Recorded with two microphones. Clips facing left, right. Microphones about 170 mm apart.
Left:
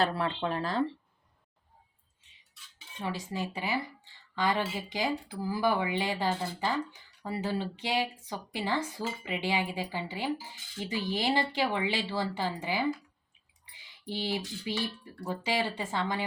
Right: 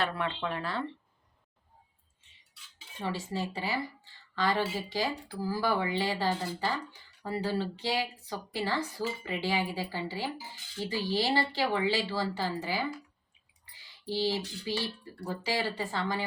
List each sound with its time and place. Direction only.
0.0 s speech: 35° left (ahead or behind)
3.2 s speech: 15° left (ahead or behind)
13.7 s a sound: 20° left (ahead or behind)
14.6 s speech: 20° left (ahead or behind)